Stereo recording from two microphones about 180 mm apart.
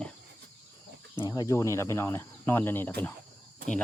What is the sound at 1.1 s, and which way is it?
Speech, 15° left (ahead or behind).